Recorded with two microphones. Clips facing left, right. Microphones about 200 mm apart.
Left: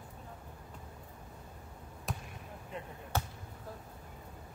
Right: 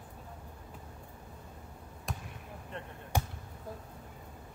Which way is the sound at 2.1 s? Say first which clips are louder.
Even; centre (ahead or behind).